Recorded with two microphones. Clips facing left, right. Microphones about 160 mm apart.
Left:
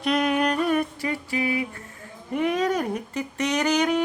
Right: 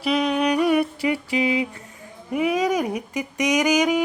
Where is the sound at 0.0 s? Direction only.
Centre (ahead or behind).